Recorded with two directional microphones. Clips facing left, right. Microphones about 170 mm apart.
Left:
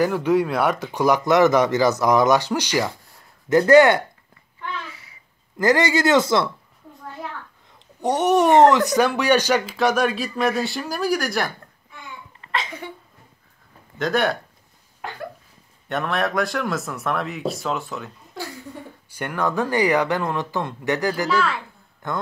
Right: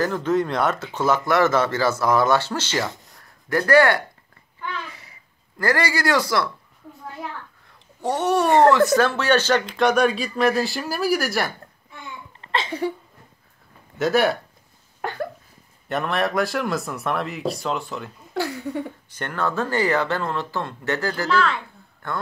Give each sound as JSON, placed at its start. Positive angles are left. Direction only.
{"t": 0.0, "sound": "speech", "side_deg": 10}
{"t": 3.2, "sound": "a sound", "side_deg": 20}
{"t": 5.6, "sound": "speech", "side_deg": 20}
{"t": 8.0, "sound": "speech", "side_deg": 20}
{"t": 12.4, "sound": "a sound", "side_deg": -30}
{"t": 13.9, "sound": "speech", "side_deg": -5}
{"t": 15.0, "sound": "a sound", "side_deg": -50}
{"t": 15.9, "sound": "speech", "side_deg": 0}
{"t": 18.3, "sound": "speech", "side_deg": -70}
{"t": 19.0, "sound": "speech", "side_deg": 10}
{"t": 22.0, "sound": "speech", "side_deg": 20}